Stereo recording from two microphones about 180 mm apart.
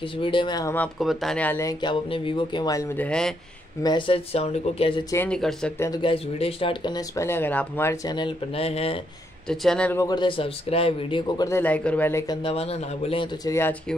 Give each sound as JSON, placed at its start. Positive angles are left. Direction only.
{"t": 0.2, "sound": "speech", "side_deg": 25}
{"t": 0.7, "sound": "speech", "side_deg": 0}
{"t": 3.8, "sound": "speech", "side_deg": 25}
{"t": 5.1, "sound": "speech", "side_deg": 10}
{"t": 5.8, "sound": "speech", "side_deg": 20}
{"t": 9.5, "sound": "speech", "side_deg": 5}
{"t": 10.0, "sound": "speech", "side_deg": 25}
{"t": 11.4, "sound": "speech", "side_deg": 10}
{"t": 12.4, "sound": "a man's voice", "side_deg": 35}
{"t": 13.5, "sound": "speech", "side_deg": 10}